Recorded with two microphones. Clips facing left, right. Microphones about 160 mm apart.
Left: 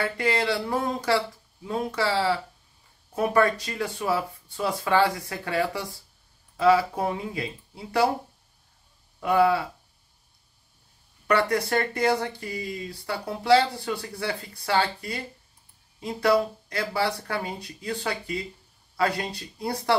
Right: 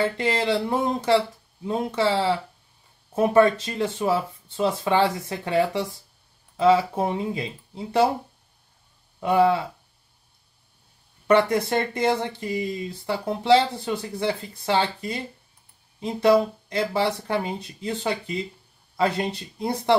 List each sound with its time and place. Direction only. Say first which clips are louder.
0.0 s speech: right 2 dB; 20° right (ahead or behind)
9.2 s speech: right 2 dB; 25° right (ahead or behind)
11.2 s speech: right 4 dB; 20° right (ahead or behind)